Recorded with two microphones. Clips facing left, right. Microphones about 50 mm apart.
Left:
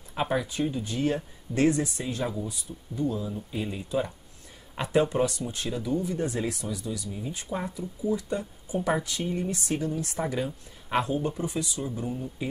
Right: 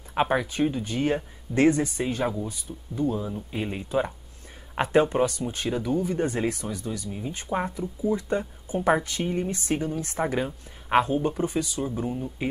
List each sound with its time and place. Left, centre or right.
0.1 s speech: right
1.7 s speech: centre
2.0 s speech: right
9.7 s speech: right